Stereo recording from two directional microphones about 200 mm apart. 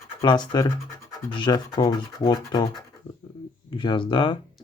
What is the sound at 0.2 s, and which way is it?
Speech, 20° left (ahead or behind).